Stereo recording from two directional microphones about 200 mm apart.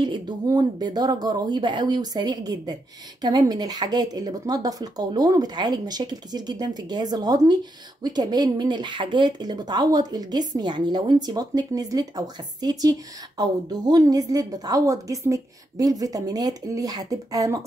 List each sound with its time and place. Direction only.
0.0 s a woman's voice: 20° right (ahead or behind)